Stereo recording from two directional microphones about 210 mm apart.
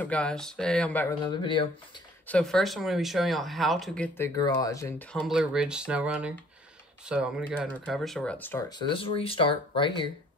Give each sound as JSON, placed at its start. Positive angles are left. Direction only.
{"t": 0.0, "sound": "speech", "side_deg": 5}
{"t": 1.2, "sound": "speech", "side_deg": 20}
{"t": 2.2, "sound": "speech", "side_deg": 5}
{"t": 4.4, "sound": "speech", "side_deg": 15}
{"t": 5.3, "sound": "speech", "side_deg": -5}